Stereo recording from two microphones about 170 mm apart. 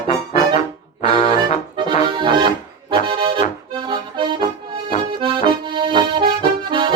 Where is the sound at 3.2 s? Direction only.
30° right (ahead or behind).